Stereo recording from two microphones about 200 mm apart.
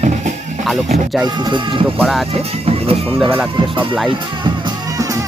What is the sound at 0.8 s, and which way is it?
Speech, 35° right (ahead or behind).